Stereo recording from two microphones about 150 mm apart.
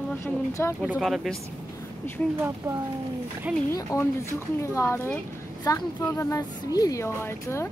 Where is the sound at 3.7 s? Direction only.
20° left (ahead or behind).